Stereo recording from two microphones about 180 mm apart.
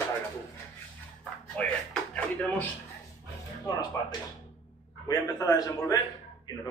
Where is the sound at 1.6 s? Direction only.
5° left (ahead or behind).